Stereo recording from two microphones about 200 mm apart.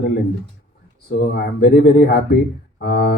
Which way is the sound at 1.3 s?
50° left (ahead or behind).